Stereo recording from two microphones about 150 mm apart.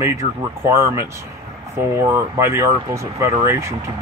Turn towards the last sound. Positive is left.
turn(degrees=-20)  # may be behind; listen again after turning